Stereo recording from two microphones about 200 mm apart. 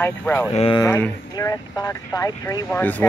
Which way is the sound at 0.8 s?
15° left (ahead or behind).